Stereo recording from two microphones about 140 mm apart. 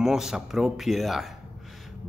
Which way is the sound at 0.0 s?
5° right (ahead or behind).